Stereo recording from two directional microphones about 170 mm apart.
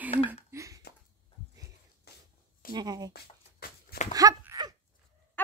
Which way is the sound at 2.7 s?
25° right (ahead or behind).